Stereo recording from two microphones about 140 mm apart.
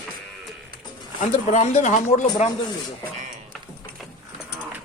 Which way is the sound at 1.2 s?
55° left (ahead or behind).